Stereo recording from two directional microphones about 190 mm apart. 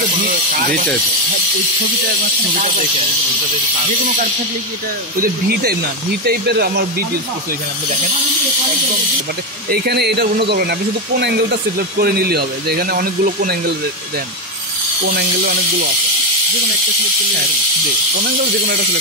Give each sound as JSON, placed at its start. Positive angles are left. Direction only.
{"t": 5.2, "sound": "speech", "side_deg": -55}
{"t": 9.7, "sound": "speech", "side_deg": -60}
{"t": 15.0, "sound": "speech", "side_deg": -55}